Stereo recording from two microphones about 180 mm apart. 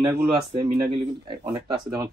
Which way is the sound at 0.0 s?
15° right (ahead or behind).